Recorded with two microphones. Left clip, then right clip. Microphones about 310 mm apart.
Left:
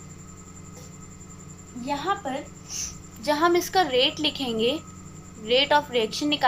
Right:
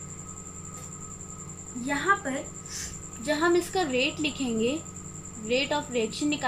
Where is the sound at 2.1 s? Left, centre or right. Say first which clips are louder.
Right 2 dB; centre.